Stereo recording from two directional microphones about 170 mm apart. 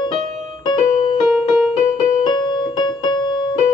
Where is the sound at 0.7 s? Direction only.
25° left (ahead or behind).